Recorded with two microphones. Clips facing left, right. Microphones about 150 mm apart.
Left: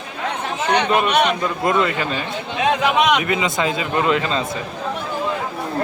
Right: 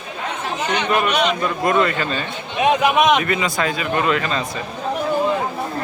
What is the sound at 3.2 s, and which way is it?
A man's voice, 20° left (ahead or behind).